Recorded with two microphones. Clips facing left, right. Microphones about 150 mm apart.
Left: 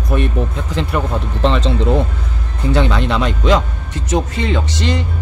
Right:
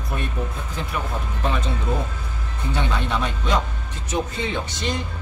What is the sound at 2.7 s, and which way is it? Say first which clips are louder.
A man's voice: left 8 dB; 90° left.